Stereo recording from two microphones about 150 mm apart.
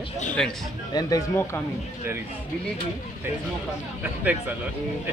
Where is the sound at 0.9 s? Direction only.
25° left (ahead or behind).